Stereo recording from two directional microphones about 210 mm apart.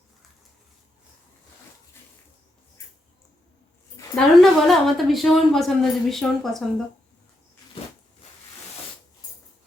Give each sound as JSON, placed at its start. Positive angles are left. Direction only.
{"t": 3.9, "sound": "a woman's voice", "side_deg": 5}